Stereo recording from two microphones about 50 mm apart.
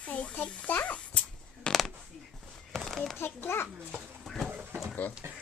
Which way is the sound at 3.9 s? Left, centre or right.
Centre.